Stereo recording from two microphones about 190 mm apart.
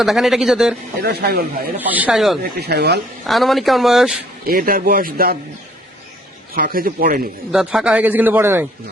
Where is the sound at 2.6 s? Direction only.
60° right (ahead or behind).